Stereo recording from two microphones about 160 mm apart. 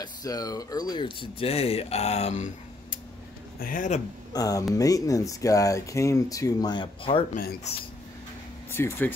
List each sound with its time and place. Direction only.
0.0 s speech: 25° left (ahead or behind); by 3.0 s 50° left (ahead or behind)
3.5 s speech: 60° left (ahead or behind)
4.3 s speech: 20° left (ahead or behind)
8.7 s speech: 15° left (ahead or behind)